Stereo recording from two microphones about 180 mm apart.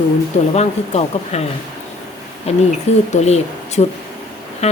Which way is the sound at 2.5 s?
35° left (ahead or behind).